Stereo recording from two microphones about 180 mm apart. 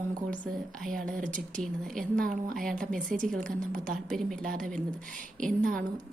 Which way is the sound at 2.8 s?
50° right (ahead or behind).